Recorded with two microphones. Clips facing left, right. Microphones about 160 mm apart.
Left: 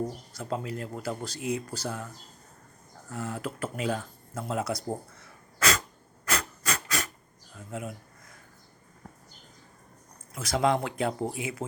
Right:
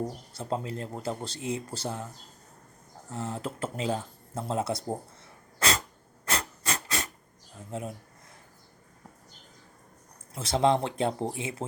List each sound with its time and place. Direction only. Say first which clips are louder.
0.3 s speech: right 1 dB; 30° right (ahead or behind)
3.1 s speech: even; 25° right (ahead or behind)
5.2 s sneeze: left 3 dB; 25° right (ahead or behind)
6.2 s rub: left 1 dB; 25° right (ahead or behind)
7.7 s speech: right 1 dB; 30° right (ahead or behind)
10.3 s speech: right 1 dB; 30° right (ahead or behind)